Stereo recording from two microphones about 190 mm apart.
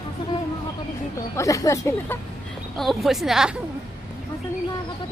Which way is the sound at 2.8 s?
Centre (ahead or behind).